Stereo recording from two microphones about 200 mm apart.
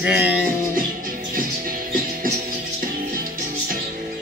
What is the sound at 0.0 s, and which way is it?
Music, 5° right (ahead or behind).